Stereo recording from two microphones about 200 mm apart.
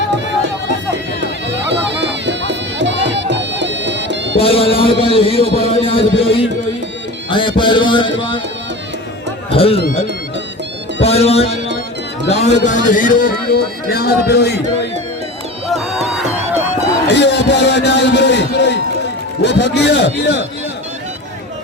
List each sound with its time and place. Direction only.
1.2 s music: 60° right (ahead or behind)
4.4 s a man's voice: 30° left (ahead or behind)
7.3 s music: 25° left (ahead or behind)
9.5 s a man's voice: 30° left (ahead or behind)
11.0 s speech: 30° left (ahead or behind); by 14.8 s 55° left (ahead or behind)
17.1 s a man's voice: 60° left (ahead or behind)